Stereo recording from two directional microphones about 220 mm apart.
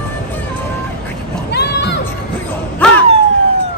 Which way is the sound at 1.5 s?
50° left (ahead or behind).